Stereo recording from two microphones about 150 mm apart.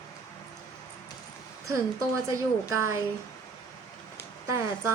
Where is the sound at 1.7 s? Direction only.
20° right (ahead or behind).